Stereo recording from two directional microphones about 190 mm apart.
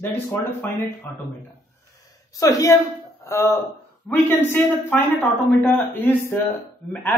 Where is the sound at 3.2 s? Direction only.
15° left (ahead or behind).